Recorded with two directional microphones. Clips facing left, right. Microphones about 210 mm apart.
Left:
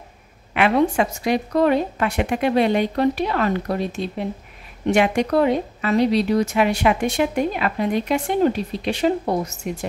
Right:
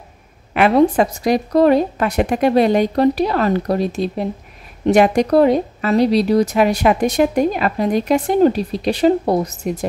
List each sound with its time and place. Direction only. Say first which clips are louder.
0.6 s a woman's voice: right 5 dB; 35° right (ahead or behind)